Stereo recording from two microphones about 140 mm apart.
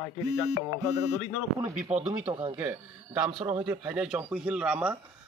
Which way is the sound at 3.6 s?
10° right (ahead or behind).